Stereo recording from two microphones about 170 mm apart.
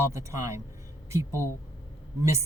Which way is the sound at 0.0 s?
15° right (ahead or behind).